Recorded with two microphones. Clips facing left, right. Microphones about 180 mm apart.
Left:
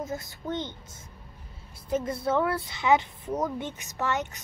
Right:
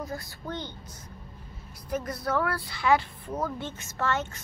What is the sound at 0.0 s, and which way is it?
Speech, 20° left (ahead or behind).